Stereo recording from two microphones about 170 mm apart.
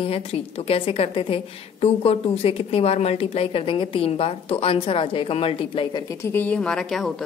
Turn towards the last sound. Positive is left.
turn(degrees=5)  # may be behind; listen again after turning